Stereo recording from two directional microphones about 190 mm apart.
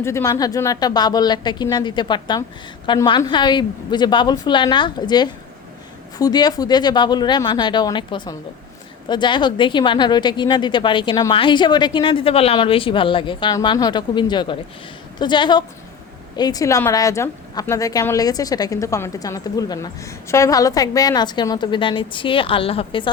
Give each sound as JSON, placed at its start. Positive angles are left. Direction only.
{"t": 0.0, "sound": "a woman's voice", "side_deg": 15}